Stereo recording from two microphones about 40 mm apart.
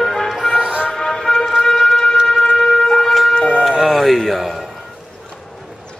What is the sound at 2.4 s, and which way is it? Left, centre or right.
Shofar, centre.